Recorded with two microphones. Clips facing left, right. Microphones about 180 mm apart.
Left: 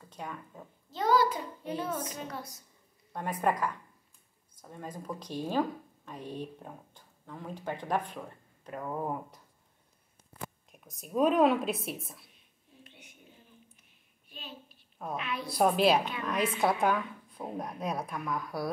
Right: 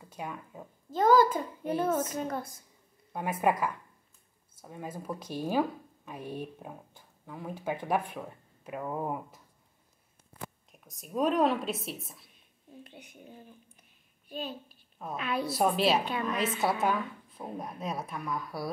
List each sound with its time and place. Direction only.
0.0 s speech: 10° right (ahead or behind)
0.8 s a child's voice: 50° right (ahead or behind)
3.1 s speech: 10° right (ahead or behind)
10.7 s a woman's voice: centre (ahead or behind)
12.8 s a sound: 35° right (ahead or behind)
15.0 s a woman's voice: centre (ahead or behind)